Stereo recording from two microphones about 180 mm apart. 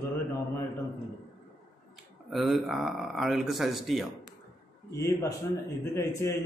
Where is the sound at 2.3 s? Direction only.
Centre (ahead or behind).